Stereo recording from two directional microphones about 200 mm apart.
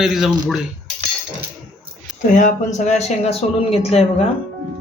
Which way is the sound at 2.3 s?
40° left (ahead or behind).